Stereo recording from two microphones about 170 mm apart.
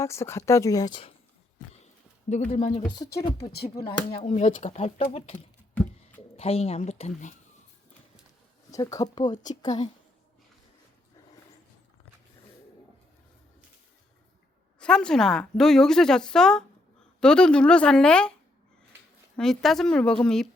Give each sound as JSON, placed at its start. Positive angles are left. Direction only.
{"t": 0.0, "sound": "speech", "side_deg": 15}
{"t": 2.5, "sound": "speech", "side_deg": 40}
{"t": 3.2, "sound": "speech", "side_deg": 20}
{"t": 3.8, "sound": "speech", "side_deg": 30}
{"t": 8.7, "sound": "speech", "side_deg": 20}
{"t": 14.8, "sound": "speech", "side_deg": 5}
{"t": 19.4, "sound": "speech", "side_deg": 0}